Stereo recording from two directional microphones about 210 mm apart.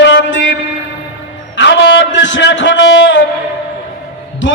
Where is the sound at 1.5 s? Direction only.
60° left (ahead or behind).